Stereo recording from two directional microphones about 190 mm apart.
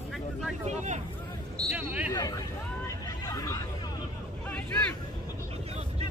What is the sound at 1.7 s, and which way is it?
Speech, 5° right (ahead or behind).